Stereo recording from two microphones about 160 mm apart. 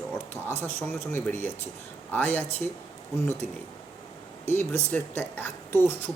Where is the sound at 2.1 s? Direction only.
10° left (ahead or behind).